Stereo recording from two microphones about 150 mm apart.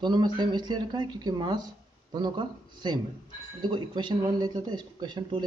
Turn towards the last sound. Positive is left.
turn(degrees=-30)  # may be behind; listen again after turning